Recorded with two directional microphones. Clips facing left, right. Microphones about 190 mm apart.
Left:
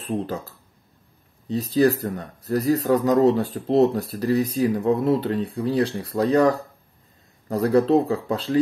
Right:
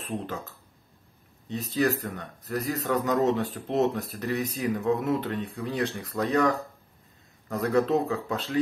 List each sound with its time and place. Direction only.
0.0 s speech: 35° left (ahead or behind)